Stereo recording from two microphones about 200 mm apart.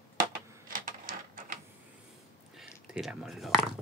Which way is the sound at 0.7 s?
45° right (ahead or behind).